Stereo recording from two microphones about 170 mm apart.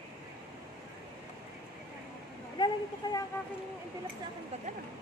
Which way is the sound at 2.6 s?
25° left (ahead or behind).